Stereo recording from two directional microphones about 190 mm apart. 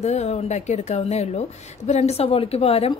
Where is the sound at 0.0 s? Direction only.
35° left (ahead or behind).